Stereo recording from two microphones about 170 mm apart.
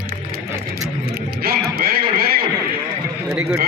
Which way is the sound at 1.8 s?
60° right (ahead or behind).